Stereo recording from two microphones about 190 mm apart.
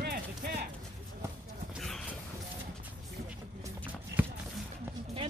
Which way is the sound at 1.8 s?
Centre (ahead or behind).